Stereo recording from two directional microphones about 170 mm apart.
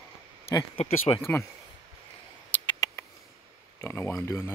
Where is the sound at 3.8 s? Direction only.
10° left (ahead or behind).